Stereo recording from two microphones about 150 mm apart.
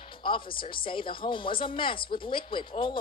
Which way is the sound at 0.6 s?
35° left (ahead or behind).